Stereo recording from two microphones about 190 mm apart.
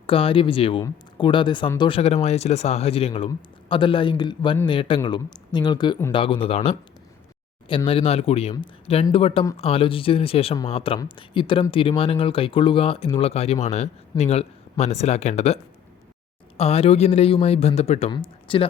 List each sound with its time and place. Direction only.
0.1 s a man's voice: 30° left (ahead or behind)
7.9 s a man's voice: 30° left (ahead or behind)
16.6 s a man's voice: 30° left (ahead or behind)